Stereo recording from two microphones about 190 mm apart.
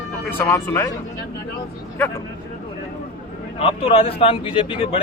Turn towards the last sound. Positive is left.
turn(degrees=30)  # may be behind; listen again after turning